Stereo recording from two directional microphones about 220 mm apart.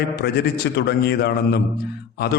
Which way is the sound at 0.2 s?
50° left (ahead or behind).